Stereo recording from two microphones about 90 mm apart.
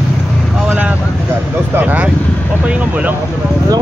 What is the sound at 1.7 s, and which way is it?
Speech, 20° right (ahead or behind).